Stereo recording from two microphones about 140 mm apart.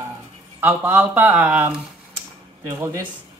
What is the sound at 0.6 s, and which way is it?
Speech, 15° right (ahead or behind).